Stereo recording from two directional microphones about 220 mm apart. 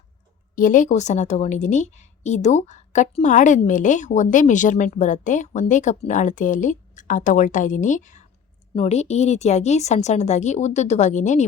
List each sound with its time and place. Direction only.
0.5 s a woman's voice: 40° left (ahead or behind)